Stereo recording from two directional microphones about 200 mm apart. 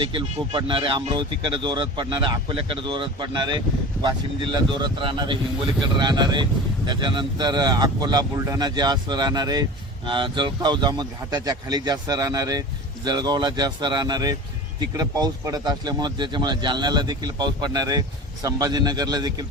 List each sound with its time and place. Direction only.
0.0 s speech: 25° right (ahead or behind)
4.8 s speech: 25° right (ahead or behind)